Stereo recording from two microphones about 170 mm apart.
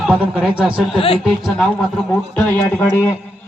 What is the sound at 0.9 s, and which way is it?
Speech, 35° left (ahead or behind).